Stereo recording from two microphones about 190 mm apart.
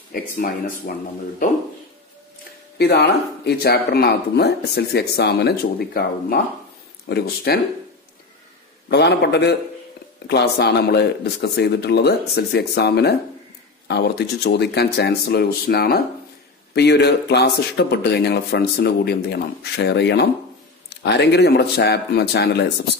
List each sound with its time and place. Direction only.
0.1 s speech: 45° left (ahead or behind)
2.8 s speech: 60° left (ahead or behind)
8.8 s speech: 60° left (ahead or behind)